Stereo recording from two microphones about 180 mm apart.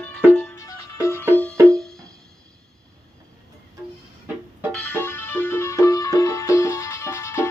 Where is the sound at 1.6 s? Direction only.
15° right (ahead or behind).